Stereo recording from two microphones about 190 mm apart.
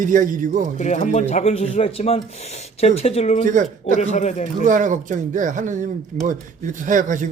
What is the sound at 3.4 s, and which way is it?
Speech, 40° right (ahead or behind).